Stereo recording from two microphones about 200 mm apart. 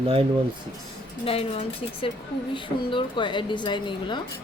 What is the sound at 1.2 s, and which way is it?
A woman's voice, 30° left (ahead or behind).